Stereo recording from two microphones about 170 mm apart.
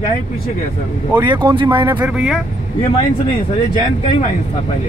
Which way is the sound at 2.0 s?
10° right (ahead or behind).